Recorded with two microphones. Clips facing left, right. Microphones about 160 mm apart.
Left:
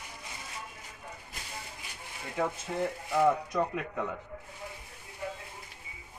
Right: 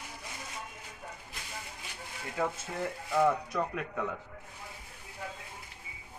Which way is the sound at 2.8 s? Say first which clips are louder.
Left 1 dB; 15° left (ahead or behind).